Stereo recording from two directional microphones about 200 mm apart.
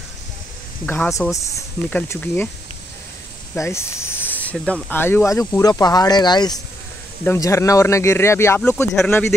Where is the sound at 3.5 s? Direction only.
15° left (ahead or behind).